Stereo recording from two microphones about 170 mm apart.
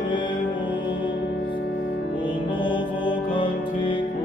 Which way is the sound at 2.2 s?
30° left (ahead or behind).